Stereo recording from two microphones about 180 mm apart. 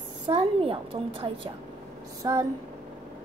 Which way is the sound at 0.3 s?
30° right (ahead or behind).